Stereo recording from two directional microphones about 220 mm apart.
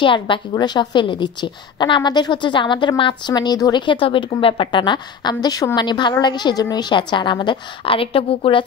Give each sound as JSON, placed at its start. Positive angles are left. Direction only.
{"t": 0.0, "sound": "a woman's voice", "side_deg": 20}